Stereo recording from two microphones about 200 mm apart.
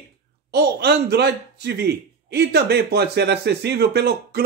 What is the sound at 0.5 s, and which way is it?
A man's voice, 55° right (ahead or behind).